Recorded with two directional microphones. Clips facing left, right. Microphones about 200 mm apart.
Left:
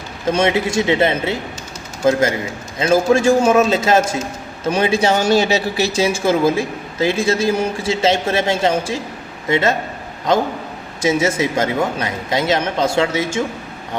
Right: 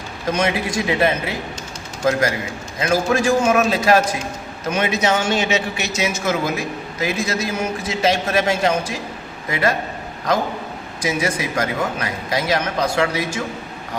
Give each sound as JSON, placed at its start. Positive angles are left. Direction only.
{"t": 0.3, "sound": "speech", "side_deg": 25}
{"t": 2.7, "sound": "speech", "side_deg": 25}
{"t": 11.0, "sound": "speech", "side_deg": 25}